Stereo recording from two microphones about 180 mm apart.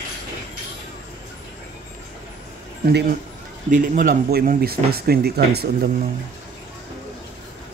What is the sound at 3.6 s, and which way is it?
Speech, 45° right (ahead or behind).